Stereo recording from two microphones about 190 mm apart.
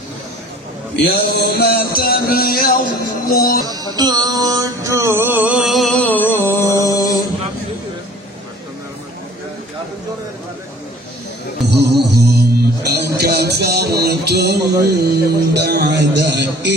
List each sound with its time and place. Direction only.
0.9 s music: 55° left (ahead or behind)
3.8 s music: 20° right (ahead or behind); by 7.3 s 20° left (ahead or behind)
11.7 s music: 60° right (ahead or behind)